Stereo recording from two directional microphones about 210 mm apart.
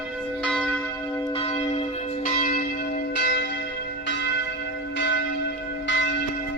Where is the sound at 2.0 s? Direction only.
40° left (ahead or behind).